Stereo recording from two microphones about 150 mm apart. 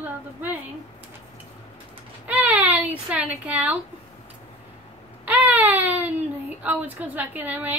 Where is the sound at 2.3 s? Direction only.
10° right (ahead or behind).